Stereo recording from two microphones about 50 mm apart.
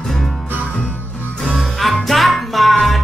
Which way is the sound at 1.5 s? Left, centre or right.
Centre.